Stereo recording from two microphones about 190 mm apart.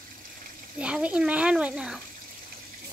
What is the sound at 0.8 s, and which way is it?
Speech, 5° right (ahead or behind).